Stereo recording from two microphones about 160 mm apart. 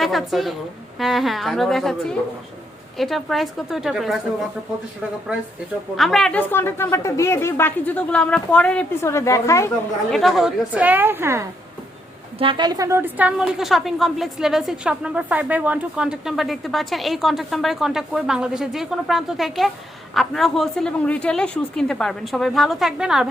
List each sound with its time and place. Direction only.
0.0 s a woman's voice: centre (ahead or behind)
6.0 s a woman's voice: centre (ahead or behind)
6.5 s speech: 15° left (ahead or behind)
10.1 s a woman's voice: centre (ahead or behind); by 11.4 s 15° right (ahead or behind)
12.4 s a woman's voice: 30° right (ahead or behind); by 23.3 s 5° right (ahead or behind)